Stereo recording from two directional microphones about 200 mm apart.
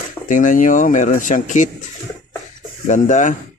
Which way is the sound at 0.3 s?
40° left (ahead or behind).